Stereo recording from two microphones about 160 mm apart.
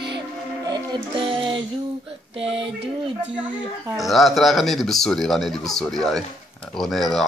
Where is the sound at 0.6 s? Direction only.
30° right (ahead or behind).